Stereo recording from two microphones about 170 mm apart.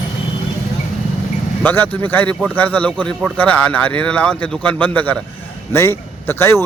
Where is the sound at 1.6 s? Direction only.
10° left (ahead or behind).